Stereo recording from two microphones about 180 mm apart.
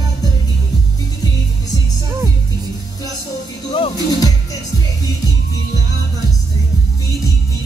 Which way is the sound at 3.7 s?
25° left (ahead or behind).